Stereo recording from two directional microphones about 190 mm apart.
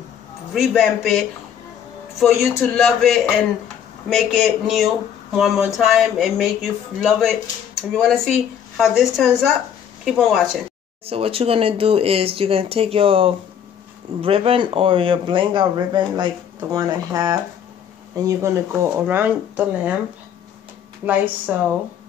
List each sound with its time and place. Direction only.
0.6 s speech: centre (ahead or behind)
2.6 s speech: centre (ahead or behind)
11.1 s speech: 30° right (ahead or behind); by 20.0 s 10° right (ahead or behind)
21.0 s speech: 10° right (ahead or behind)